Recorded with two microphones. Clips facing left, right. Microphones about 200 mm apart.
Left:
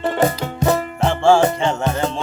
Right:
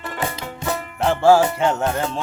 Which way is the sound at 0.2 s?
40° left (ahead or behind).